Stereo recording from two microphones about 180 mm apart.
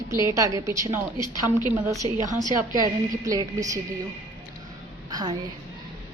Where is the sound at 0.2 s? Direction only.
15° right (ahead or behind).